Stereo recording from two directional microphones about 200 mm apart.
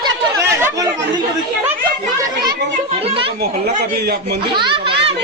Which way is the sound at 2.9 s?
30° right (ahead or behind).